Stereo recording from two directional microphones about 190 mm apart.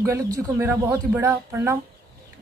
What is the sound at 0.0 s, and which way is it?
Speech, 15° right (ahead or behind).